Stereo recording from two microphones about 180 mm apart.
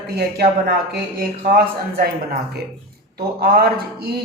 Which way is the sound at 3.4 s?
60° right (ahead or behind).